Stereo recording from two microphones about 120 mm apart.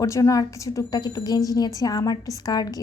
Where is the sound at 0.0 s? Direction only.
25° left (ahead or behind).